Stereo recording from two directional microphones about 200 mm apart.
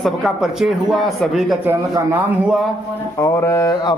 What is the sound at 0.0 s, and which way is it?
Speech, centre (ahead or behind).